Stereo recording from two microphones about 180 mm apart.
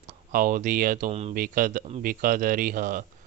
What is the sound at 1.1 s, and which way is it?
Speech, 35° right (ahead or behind).